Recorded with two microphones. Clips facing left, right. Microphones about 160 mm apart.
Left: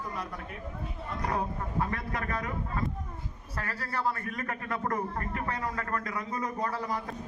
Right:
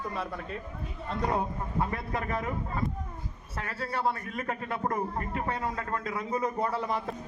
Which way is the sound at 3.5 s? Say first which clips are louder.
Right 1 dB; 25° right (ahead or behind).